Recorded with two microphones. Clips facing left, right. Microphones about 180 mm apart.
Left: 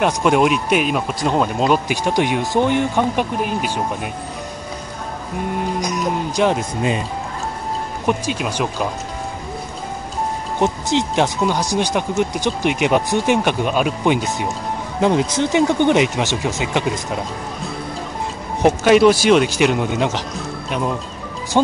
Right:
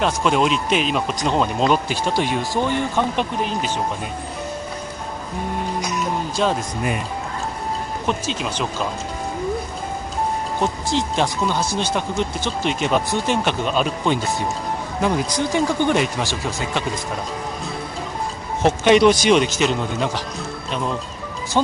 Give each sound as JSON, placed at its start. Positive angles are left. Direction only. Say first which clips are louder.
{"t": 0.0, "sound": "speech", "louder": "left 3 dB", "side_deg": 15}
{"t": 6.3, "sound": "speech", "louder": "left 4 dB", "side_deg": 20}
{"t": 8.1, "sound": "speech", "louder": "left 4 dB", "side_deg": 10}
{"t": 10.6, "sound": "speech", "louder": "left 5 dB", "side_deg": 20}
{"t": 18.9, "sound": "speech", "louder": "left 1 dB", "side_deg": 5}